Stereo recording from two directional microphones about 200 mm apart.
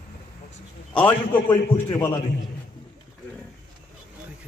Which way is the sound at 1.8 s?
25° left (ahead or behind).